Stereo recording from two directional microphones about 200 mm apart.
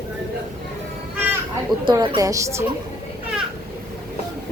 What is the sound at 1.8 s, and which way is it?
Speech, 25° right (ahead or behind).